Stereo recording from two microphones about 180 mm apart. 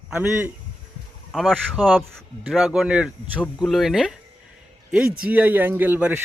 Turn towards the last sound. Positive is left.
turn(degrees=-10)  # may be behind; listen again after turning